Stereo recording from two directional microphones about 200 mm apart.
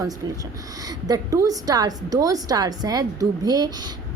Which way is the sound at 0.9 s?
20° right (ahead or behind).